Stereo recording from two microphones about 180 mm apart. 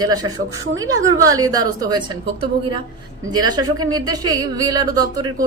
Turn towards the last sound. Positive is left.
turn(degrees=-20)  # may be behind; listen again after turning